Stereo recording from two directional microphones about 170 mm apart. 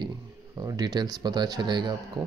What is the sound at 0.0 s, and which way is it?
Speech, 25° right (ahead or behind).